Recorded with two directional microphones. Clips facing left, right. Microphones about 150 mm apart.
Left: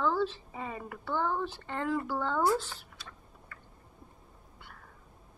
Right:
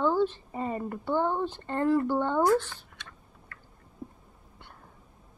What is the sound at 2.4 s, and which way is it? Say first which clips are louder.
Speech: right 4 dB; 10° left (ahead or behind).